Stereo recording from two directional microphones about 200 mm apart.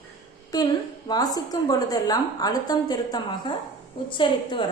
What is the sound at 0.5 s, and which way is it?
A woman's voice, 20° left (ahead or behind).